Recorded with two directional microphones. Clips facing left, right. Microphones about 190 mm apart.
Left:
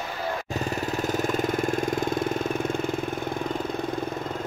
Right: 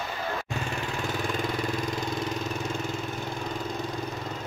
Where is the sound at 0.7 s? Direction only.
40° left (ahead or behind).